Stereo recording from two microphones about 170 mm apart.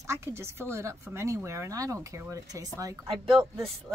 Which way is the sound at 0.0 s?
15° right (ahead or behind).